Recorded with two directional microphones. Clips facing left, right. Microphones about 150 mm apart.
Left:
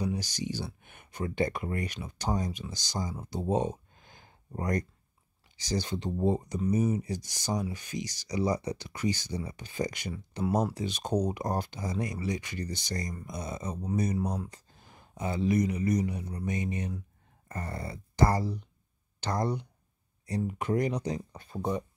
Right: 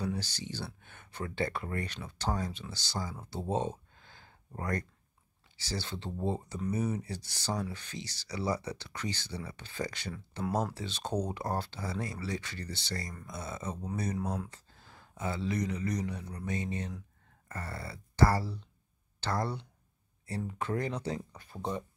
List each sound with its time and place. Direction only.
0.0 s speech: 15° left (ahead or behind)